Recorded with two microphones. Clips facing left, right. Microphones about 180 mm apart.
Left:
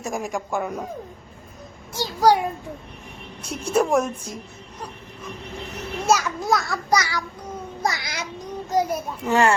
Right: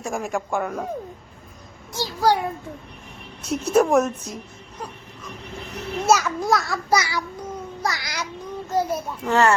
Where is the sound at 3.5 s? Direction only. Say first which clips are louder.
Right 3 dB; 5° right (ahead or behind).